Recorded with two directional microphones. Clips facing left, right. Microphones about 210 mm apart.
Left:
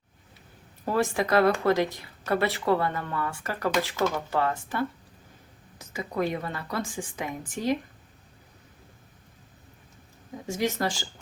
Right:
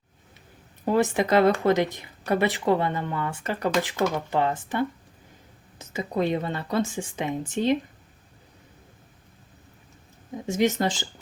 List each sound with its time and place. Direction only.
0.9 s speech: 20° right (ahead or behind)
10.4 s speech: 20° right (ahead or behind)